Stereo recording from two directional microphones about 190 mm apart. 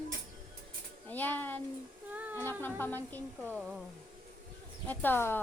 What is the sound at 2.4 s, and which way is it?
A woman's voice, 10° left (ahead or behind).